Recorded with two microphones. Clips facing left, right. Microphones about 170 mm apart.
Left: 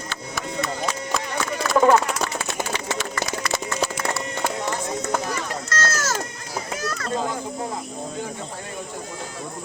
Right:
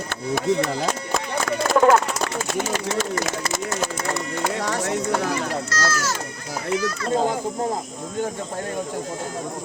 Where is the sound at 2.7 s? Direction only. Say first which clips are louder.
Right 4 dB; 45° right (ahead or behind).